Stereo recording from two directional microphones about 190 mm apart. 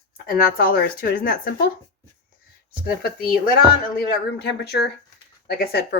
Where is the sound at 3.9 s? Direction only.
60° left (ahead or behind).